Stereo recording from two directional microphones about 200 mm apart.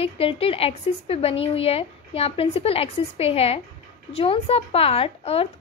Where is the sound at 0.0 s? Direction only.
30° left (ahead or behind).